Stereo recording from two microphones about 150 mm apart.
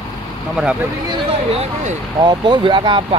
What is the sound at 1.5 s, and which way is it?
Speech, 45° right (ahead or behind).